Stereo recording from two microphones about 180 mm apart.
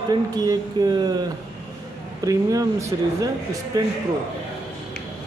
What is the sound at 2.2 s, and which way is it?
A man's voice, 20° right (ahead or behind).